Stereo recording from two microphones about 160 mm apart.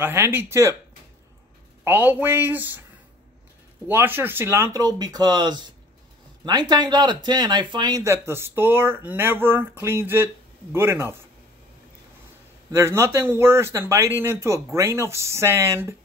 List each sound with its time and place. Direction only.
0.0 s speech: 15° right (ahead or behind)
1.9 s speech: 10° right (ahead or behind)
3.8 s speech: 10° right (ahead or behind)
12.7 s speech: 15° right (ahead or behind)